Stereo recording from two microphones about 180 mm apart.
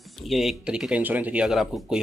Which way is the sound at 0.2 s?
Centre (ahead or behind).